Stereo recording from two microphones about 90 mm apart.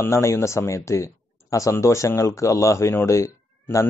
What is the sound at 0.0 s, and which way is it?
Speech, 30° left (ahead or behind).